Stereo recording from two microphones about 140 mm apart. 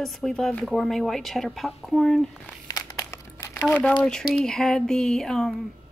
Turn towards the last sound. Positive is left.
turn(degrees=5)  # may be behind; listen again after turning